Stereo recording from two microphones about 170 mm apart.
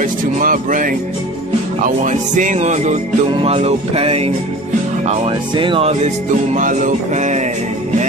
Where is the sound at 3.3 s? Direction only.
35° right (ahead or behind).